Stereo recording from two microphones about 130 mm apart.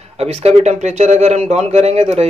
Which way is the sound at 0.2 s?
50° right (ahead or behind).